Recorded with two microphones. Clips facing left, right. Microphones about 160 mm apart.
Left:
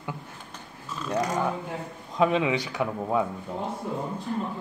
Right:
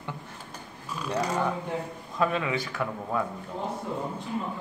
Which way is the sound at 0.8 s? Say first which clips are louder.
Even; 10° right (ahead or behind).